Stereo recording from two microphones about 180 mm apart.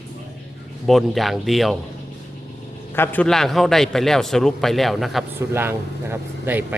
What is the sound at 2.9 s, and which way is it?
A man's voice, 10° left (ahead or behind).